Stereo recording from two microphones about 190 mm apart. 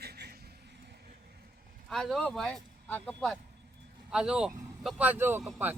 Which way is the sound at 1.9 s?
Centre (ahead or behind).